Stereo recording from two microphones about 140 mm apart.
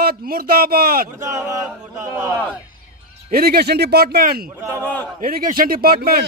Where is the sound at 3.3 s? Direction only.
90° right.